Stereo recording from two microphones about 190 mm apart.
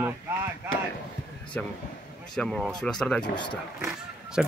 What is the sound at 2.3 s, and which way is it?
Speech, centre (ahead or behind).